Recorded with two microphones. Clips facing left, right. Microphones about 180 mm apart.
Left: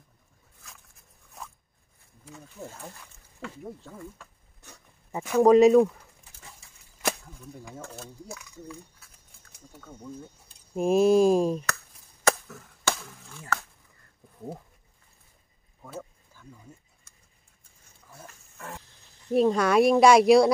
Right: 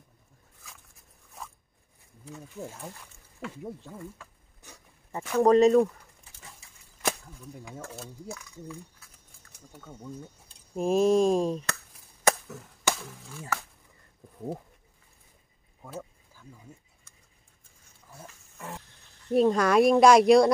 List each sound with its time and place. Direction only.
3.3 s a sound: 5° right (ahead or behind)
5.1 s speech: 5° left (ahead or behind)
7.1 s speech: centre (ahead or behind)
10.7 s speech: centre (ahead or behind)
12.3 s cap gun: 20° right (ahead or behind)
13.3 s speech: 10° right (ahead or behind)
15.8 s a sound: 10° right (ahead or behind)
18.2 s pig: 15° right (ahead or behind)
19.3 s speech: centre (ahead or behind)